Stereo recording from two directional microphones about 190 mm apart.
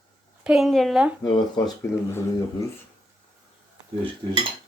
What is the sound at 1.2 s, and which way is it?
Speech, 20° left (ahead or behind).